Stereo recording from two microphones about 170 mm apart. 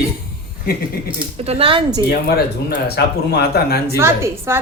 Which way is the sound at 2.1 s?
70° left (ahead or behind).